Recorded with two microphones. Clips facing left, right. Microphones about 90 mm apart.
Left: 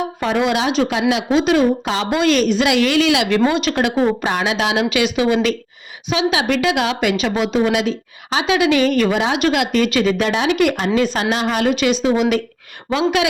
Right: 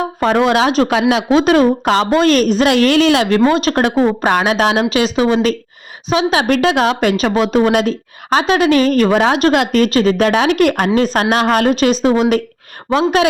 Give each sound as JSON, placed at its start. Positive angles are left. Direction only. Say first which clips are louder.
{"t": 0.2, "sound": "speech", "louder": "right 6 dB", "side_deg": -45}
{"t": 2.0, "sound": "a woman's voice", "louder": "right 1 dB", "side_deg": -40}